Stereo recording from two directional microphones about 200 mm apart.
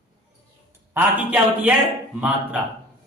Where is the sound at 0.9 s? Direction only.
10° right (ahead or behind).